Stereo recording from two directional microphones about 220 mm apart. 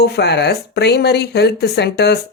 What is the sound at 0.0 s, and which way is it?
Speech, 50° left (ahead or behind).